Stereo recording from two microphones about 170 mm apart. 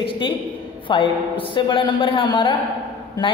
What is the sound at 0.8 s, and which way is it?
A man's voice, 30° left (ahead or behind).